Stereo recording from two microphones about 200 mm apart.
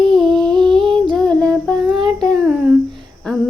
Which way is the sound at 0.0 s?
Centre (ahead or behind).